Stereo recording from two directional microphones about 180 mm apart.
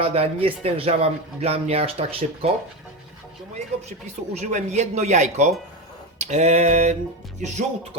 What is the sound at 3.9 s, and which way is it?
Speech, 40° right (ahead or behind).